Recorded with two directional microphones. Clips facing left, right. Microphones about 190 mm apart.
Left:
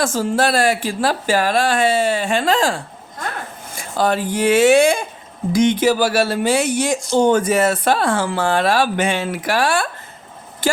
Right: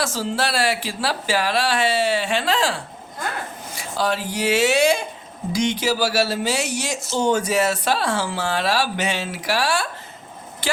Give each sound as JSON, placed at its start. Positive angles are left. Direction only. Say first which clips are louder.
{"t": 0.0, "sound": "speech", "louder": "left 6 dB", "side_deg": 50}